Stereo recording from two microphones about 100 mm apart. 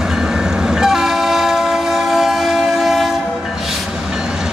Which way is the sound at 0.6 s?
5° right (ahead or behind).